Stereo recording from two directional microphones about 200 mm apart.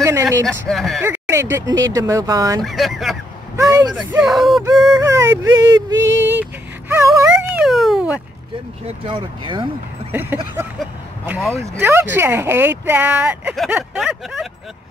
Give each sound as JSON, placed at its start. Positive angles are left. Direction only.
{"t": 0.0, "sound": "a sound", "side_deg": -15}
{"t": 0.5, "sound": "speech", "side_deg": 0}
{"t": 1.0, "sound": "speech", "side_deg": -10}
{"t": 2.6, "sound": "speech", "side_deg": 0}
{"t": 3.5, "sound": "speech", "side_deg": -15}
{"t": 3.9, "sound": "speech", "side_deg": -5}
{"t": 5.0, "sound": "speech", "side_deg": -15}
{"t": 6.9, "sound": "a sound", "side_deg": -10}
{"t": 8.8, "sound": "speech", "side_deg": -25}
{"t": 10.8, "sound": "speech", "side_deg": -10}